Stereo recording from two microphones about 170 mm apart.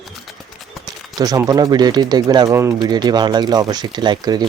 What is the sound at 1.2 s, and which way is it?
Speech, 20° right (ahead or behind).